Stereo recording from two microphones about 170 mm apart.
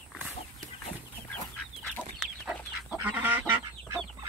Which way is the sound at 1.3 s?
10° left (ahead or behind).